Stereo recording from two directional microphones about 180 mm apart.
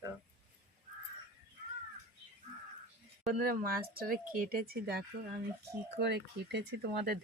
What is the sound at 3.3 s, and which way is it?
Speech, 55° right (ahead or behind).